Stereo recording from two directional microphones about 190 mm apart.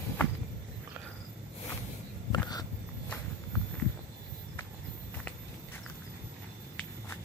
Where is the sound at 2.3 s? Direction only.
20° left (ahead or behind).